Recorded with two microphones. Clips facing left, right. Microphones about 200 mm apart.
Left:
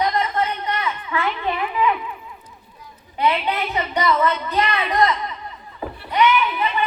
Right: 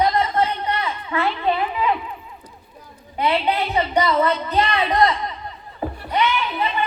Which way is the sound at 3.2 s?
30° right (ahead or behind).